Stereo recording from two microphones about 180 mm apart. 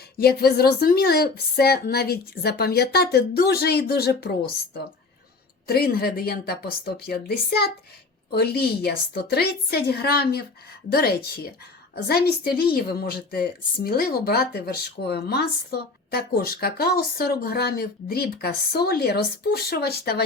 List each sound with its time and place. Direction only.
0.2 s speech: 60° left (ahead or behind)
5.6 s speech: 55° left (ahead or behind)